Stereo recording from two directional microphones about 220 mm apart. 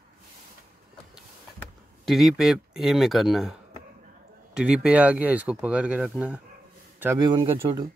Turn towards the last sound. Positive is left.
turn(degrees=-15)  # may be behind; listen again after turning